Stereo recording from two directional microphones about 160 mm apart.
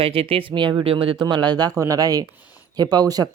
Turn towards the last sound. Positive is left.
turn(degrees=-25)  # may be behind; listen again after turning